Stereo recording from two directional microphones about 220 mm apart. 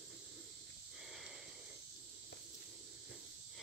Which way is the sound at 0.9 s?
Centre (ahead or behind).